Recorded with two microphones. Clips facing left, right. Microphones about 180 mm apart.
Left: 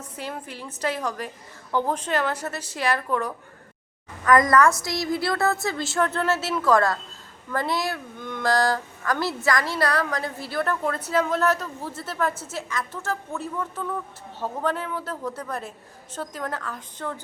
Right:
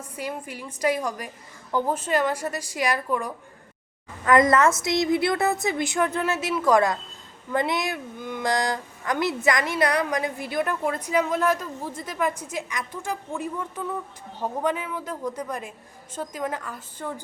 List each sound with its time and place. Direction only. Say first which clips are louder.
0.0 s a woman's voice: right 2 dB; 10° right (ahead or behind)
4.2 s a woman's voice: even; 25° right (ahead or behind)